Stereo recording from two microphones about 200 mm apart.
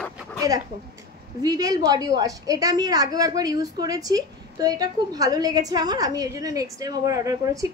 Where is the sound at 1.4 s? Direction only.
20° right (ahead or behind).